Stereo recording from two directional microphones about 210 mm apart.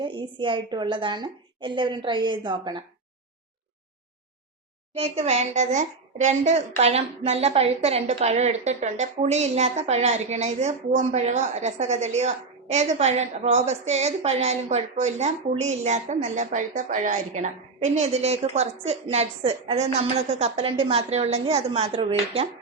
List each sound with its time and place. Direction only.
0.0 s a woman's voice: 25° right (ahead or behind)
4.9 s a woman's voice: 30° right (ahead or behind)